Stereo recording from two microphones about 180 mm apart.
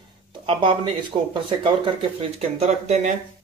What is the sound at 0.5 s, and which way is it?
Speech, 25° right (ahead or behind).